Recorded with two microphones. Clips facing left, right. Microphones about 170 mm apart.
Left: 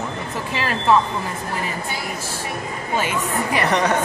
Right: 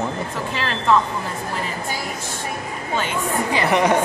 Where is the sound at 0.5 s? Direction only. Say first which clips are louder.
Left 1 dB; 10° left (ahead or behind).